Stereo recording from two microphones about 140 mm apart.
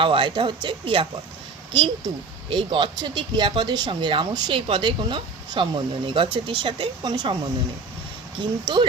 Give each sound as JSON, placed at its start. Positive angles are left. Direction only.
{"t": 0.0, "sound": "speech", "side_deg": -40}
{"t": 2.5, "sound": "speech", "side_deg": -35}
{"t": 8.4, "sound": "speech", "side_deg": -35}